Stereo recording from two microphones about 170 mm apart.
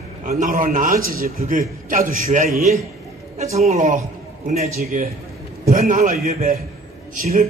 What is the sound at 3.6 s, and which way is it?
A man's voice, 45° right (ahead or behind).